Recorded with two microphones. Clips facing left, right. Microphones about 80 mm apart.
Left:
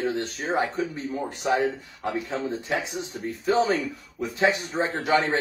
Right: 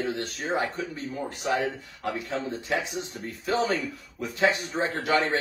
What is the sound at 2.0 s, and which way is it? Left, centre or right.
Speech, centre.